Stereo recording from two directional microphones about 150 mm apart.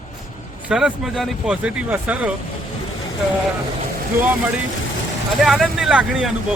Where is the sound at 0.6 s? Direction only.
5° right (ahead or behind).